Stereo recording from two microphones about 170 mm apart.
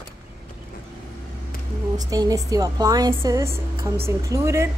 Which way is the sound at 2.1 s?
20° right (ahead or behind).